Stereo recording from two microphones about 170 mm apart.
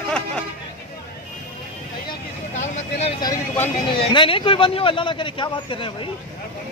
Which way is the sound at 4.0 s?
30° left (ahead or behind).